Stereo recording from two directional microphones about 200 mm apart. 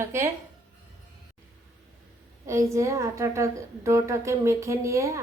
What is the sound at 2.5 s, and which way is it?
A woman's voice, 15° right (ahead or behind).